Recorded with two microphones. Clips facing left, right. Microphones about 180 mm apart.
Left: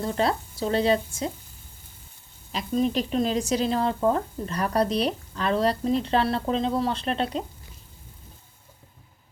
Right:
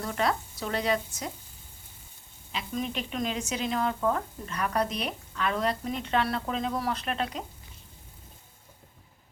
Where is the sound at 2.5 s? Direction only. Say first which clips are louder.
Left 8 dB; 40° left (ahead or behind).